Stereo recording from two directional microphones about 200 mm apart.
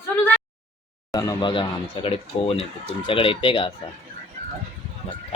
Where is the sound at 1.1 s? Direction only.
20° left (ahead or behind).